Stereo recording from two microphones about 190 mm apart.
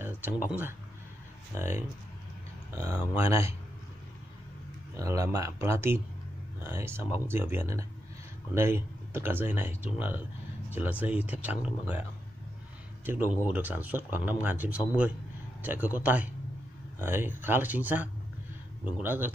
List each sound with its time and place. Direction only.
0.0 s speech: 10° right (ahead or behind)
4.9 s speech: 15° right (ahead or behind)